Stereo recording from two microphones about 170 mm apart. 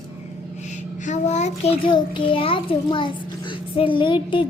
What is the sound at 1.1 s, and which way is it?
A child's voice, 40° left (ahead or behind).